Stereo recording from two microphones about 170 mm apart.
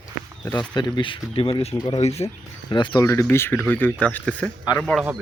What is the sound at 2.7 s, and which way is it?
Speech, 25° left (ahead or behind).